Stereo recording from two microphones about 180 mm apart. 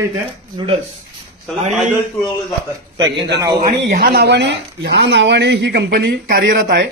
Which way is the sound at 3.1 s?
70° right (ahead or behind).